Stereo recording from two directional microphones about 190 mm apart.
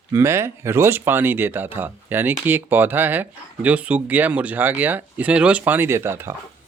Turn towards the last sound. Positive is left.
turn(degrees=-15)  # may be behind; listen again after turning